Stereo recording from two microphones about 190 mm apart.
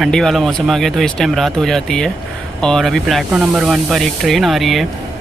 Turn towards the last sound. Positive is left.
turn(degrees=0)  # may be behind; listen again after turning